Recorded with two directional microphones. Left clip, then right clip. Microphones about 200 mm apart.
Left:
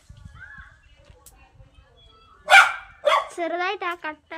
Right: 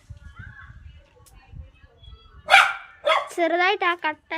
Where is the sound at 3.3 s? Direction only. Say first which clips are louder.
Right 5 dB; 25° right (ahead or behind).